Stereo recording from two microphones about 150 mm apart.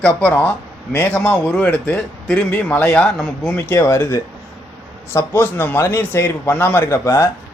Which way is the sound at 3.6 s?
15° left (ahead or behind).